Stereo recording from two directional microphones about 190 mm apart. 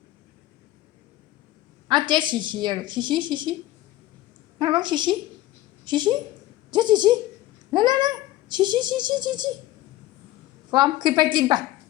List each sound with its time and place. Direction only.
1.9 s speech: 25° right (ahead or behind)
4.5 s a woman's voice: 25° right (ahead or behind)
10.7 s speech: 20° right (ahead or behind)